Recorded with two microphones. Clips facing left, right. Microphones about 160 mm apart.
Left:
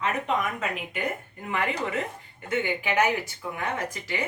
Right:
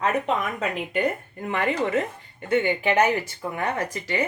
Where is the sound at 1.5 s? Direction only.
30° right (ahead or behind).